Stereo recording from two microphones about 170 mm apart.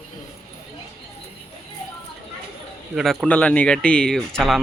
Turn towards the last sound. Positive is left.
turn(degrees=0)  # may be behind; listen again after turning